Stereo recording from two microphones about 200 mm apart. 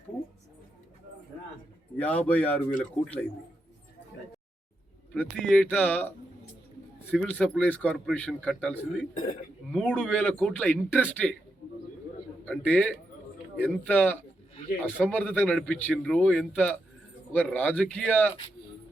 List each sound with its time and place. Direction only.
2.0 s speech: 5° left (ahead or behind)
5.1 s a man's voice: 5° left (ahead or behind)
9.1 s speech: 40° left (ahead or behind)
9.7 s a man's voice: 5° left (ahead or behind)
12.5 s speech: 5° left (ahead or behind)